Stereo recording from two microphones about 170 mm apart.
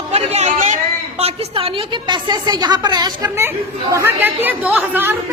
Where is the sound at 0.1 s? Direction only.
40° right (ahead or behind).